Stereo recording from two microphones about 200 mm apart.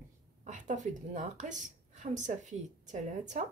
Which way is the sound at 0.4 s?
40° right (ahead or behind).